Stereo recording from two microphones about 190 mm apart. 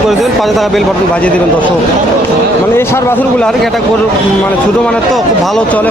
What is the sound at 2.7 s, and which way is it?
A man's voice, 15° left (ahead or behind).